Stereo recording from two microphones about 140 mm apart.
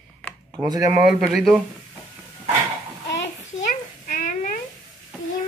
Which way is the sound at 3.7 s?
65° left (ahead or behind).